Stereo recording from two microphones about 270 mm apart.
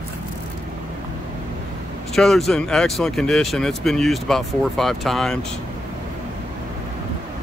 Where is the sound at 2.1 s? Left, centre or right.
Centre.